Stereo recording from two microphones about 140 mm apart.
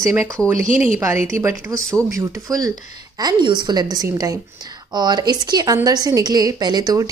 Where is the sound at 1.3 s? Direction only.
20° right (ahead or behind).